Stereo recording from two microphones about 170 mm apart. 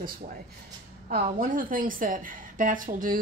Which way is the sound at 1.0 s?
55° right (ahead or behind).